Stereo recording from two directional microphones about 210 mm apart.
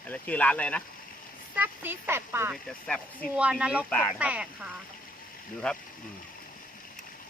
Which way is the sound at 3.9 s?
5° left (ahead or behind).